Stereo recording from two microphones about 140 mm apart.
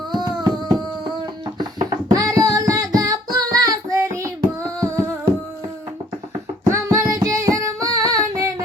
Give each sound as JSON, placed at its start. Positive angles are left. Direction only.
{"t": 0.1, "sound": "music", "side_deg": -30}
{"t": 6.7, "sound": "music", "side_deg": -20}